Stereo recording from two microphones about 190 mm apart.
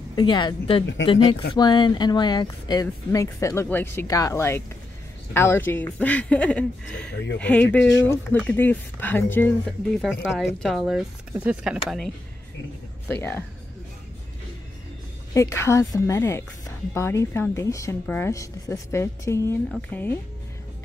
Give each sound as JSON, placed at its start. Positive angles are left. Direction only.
{"t": 0.1, "sound": "speech", "side_deg": 25}
{"t": 7.1, "sound": "speech", "side_deg": 65}
{"t": 7.3, "sound": "speech", "side_deg": 5}
{"t": 10.0, "sound": "speech", "side_deg": 0}
{"t": 13.1, "sound": "speech", "side_deg": 10}
{"t": 15.3, "sound": "speech", "side_deg": 15}